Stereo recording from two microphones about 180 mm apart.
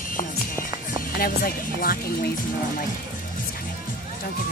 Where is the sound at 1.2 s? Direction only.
55° left (ahead or behind).